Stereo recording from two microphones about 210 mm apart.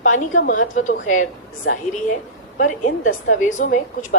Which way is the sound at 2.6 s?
40° left (ahead or behind).